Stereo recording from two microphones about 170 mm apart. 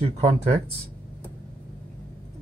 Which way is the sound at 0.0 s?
35° right (ahead or behind).